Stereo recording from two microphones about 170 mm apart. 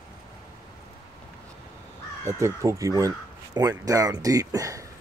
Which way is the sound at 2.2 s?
15° right (ahead or behind).